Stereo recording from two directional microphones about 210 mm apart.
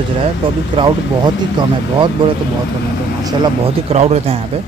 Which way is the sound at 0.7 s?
20° right (ahead or behind).